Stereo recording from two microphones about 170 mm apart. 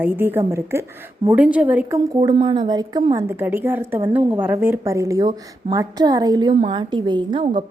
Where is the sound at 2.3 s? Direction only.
35° right (ahead or behind).